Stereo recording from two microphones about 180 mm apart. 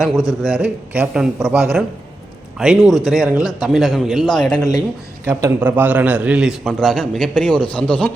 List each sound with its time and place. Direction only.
0.0 s a man's voice: 5° right (ahead or behind)
4.5 s speech: 20° left (ahead or behind)
5.2 s a man's voice: 15° right (ahead or behind); by 8.1 s 5° left (ahead or behind)